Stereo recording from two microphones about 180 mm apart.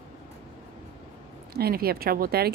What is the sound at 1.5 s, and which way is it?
Speech, 60° right (ahead or behind).